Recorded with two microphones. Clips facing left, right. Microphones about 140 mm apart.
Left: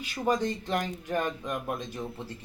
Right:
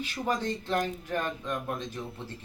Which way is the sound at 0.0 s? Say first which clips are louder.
Left 3 dB; 15° left (ahead or behind).